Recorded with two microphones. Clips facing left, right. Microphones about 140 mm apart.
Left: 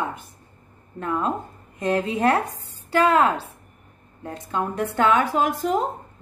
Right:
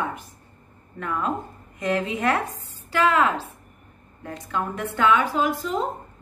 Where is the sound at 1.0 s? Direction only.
35° left (ahead or behind).